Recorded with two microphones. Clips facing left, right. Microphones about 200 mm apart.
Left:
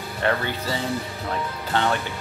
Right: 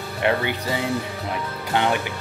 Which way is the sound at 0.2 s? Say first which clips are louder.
Right 2 dB; 15° right (ahead or behind).